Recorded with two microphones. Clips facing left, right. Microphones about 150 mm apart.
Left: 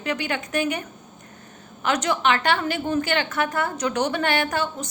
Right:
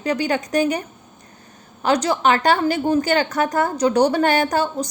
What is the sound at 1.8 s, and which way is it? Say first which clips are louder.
A woman's voice: right 4 dB; 35° right (ahead or behind).